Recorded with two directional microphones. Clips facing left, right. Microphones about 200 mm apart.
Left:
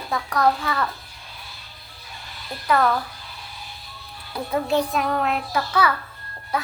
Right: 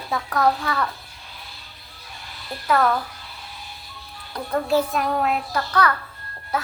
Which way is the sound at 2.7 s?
Centre (ahead or behind).